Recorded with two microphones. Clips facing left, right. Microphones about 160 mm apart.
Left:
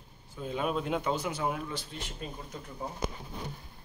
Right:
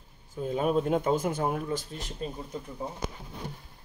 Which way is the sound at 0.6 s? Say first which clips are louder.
Right 5 dB; 40° right (ahead or behind).